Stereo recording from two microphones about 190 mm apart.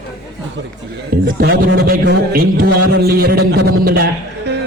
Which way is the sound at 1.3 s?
55° right (ahead or behind).